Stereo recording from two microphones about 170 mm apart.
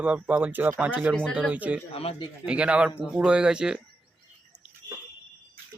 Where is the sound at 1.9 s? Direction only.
35° left (ahead or behind).